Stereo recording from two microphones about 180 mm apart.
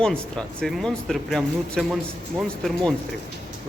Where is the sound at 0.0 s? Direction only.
5° left (ahead or behind).